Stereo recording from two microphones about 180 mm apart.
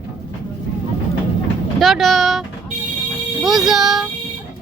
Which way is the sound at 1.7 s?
Centre (ahead or behind).